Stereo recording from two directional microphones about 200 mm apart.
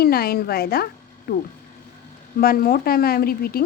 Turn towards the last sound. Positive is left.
turn(degrees=50)  # may be behind; listen again after turning